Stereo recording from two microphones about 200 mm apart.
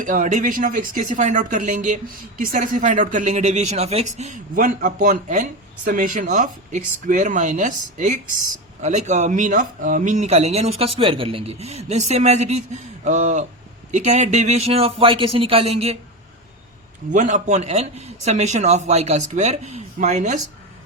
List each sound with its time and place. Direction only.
0.0 s speech: 40° right (ahead or behind)
17.1 s speech: 40° right (ahead or behind)